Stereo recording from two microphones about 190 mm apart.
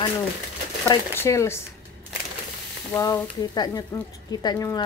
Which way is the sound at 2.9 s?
15° left (ahead or behind).